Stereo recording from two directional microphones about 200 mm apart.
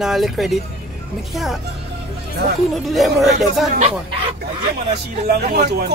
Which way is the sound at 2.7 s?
Centre (ahead or behind).